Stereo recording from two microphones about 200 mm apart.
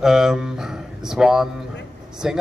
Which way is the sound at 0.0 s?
5° right (ahead or behind).